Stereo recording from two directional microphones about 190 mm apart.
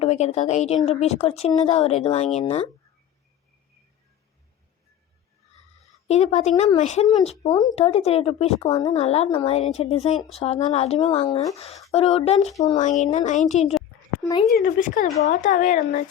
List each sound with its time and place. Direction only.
0.0 s speech: 35° left (ahead or behind)
6.1 s speech: 35° left (ahead or behind)